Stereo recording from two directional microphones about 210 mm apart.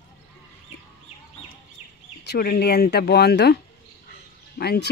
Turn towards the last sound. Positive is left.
turn(degrees=50)  # may be behind; listen again after turning